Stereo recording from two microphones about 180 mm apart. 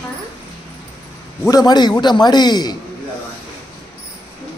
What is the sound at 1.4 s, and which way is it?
A man's voice, 20° left (ahead or behind).